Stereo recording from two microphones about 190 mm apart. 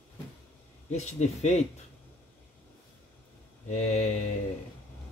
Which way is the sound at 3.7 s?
35° left (ahead or behind).